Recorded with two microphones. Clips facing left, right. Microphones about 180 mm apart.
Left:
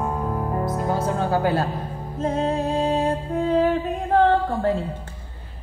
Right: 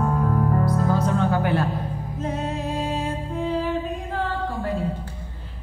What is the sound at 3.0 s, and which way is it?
Music, 55° left (ahead or behind).